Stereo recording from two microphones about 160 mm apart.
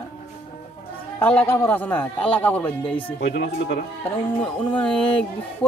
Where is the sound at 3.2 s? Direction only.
80° left.